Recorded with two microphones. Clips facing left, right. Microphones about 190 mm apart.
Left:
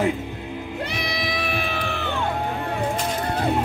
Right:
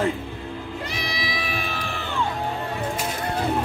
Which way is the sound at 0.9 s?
60° left (ahead or behind).